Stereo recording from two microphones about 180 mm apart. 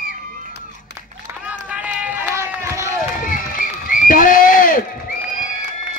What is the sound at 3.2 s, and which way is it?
Run, 50° left (ahead or behind).